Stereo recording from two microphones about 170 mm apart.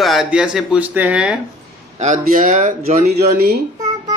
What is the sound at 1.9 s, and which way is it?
Speech, 45° right (ahead or behind).